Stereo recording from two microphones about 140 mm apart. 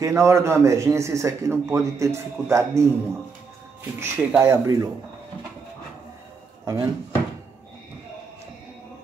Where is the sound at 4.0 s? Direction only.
15° right (ahead or behind).